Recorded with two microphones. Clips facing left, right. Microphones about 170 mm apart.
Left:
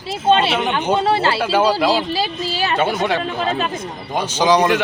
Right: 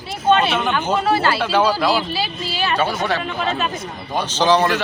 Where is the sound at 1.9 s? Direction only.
40° left (ahead or behind).